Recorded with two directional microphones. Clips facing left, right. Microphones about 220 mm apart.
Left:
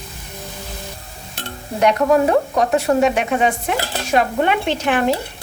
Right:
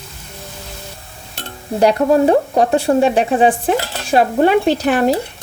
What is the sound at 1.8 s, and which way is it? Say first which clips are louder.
Speech: right 2 dB; 30° right (ahead or behind).